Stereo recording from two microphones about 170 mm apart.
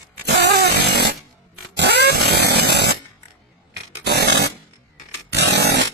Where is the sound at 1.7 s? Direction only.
80° right.